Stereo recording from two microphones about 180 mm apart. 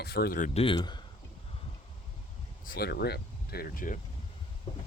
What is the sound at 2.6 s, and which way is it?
Speech, 60° left (ahead or behind).